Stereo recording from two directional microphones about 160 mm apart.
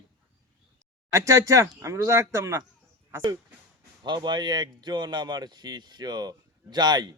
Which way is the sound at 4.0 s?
30° right (ahead or behind).